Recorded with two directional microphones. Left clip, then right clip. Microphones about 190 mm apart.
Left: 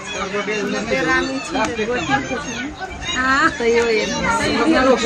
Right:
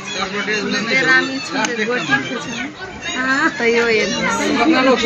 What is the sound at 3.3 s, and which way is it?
Speech, 10° left (ahead or behind).